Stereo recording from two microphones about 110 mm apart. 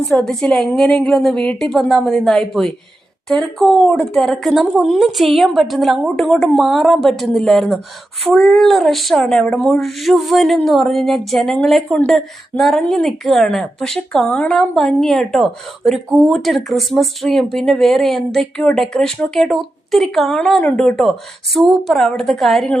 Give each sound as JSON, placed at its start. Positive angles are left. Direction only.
{"t": 0.1, "sound": "speech", "side_deg": 5}